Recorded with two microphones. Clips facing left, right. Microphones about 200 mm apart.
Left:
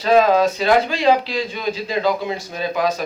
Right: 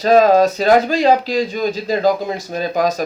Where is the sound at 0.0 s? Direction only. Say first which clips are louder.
Right 3 dB; 40° right (ahead or behind).